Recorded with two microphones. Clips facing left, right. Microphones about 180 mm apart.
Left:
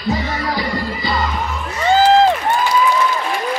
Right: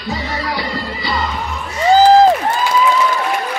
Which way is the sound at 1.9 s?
35° right (ahead or behind).